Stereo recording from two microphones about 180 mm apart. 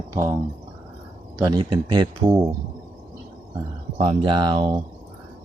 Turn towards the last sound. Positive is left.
turn(degrees=-25)  # may be behind; listen again after turning